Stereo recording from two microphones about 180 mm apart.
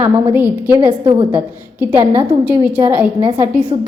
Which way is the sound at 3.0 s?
5° right (ahead or behind).